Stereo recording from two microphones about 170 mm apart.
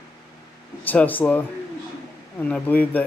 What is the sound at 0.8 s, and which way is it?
Speech, 10° left (ahead or behind).